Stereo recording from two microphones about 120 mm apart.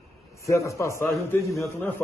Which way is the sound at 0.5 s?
25° left (ahead or behind).